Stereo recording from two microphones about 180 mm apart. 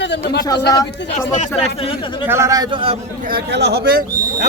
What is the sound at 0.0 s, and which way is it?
Speech, 75° left (ahead or behind).